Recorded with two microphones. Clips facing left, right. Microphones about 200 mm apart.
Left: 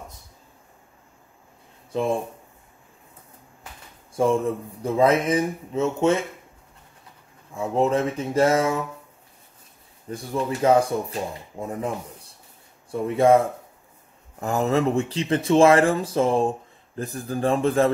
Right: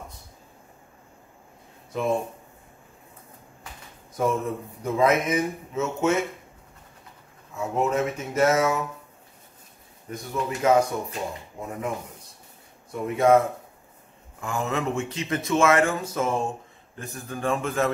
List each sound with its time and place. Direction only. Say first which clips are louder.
1.9 s speech: left 2 dB; 30° left (ahead or behind)
4.1 s speech: left 4 dB; 30° left (ahead or behind)
7.5 s speech: left 3 dB; 30° left (ahead or behind)
10.0 s speech: left 3 dB; 30° left (ahead or behind)
12.9 s speech: left 2 dB; 30° left (ahead or behind)